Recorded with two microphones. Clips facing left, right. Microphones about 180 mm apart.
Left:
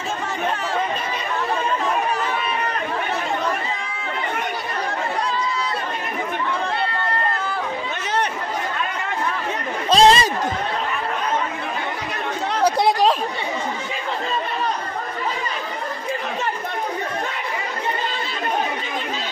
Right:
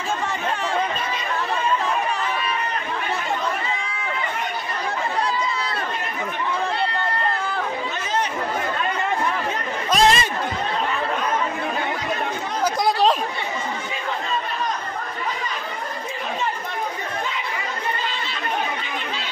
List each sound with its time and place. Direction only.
9.8 s chatter: 30° left (ahead or behind)